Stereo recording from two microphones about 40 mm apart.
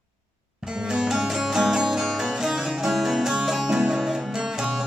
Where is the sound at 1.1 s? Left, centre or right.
Centre.